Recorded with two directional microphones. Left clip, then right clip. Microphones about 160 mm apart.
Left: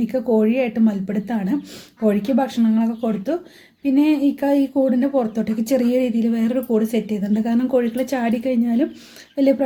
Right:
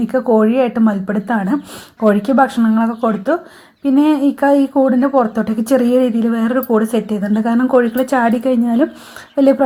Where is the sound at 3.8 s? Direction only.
5° right (ahead or behind).